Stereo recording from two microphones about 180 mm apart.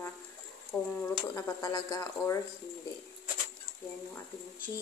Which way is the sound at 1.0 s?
20° left (ahead or behind).